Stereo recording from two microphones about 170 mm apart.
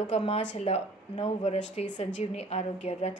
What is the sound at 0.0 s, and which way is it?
A woman's voice, 40° left (ahead or behind).